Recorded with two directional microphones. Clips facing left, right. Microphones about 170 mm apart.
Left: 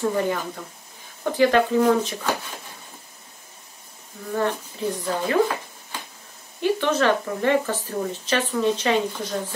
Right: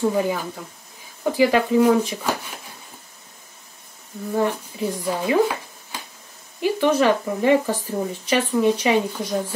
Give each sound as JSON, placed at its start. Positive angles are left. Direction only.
{"t": 0.1, "sound": "speech", "side_deg": -5}
{"t": 4.3, "sound": "speech", "side_deg": -10}
{"t": 6.6, "sound": "speech", "side_deg": -10}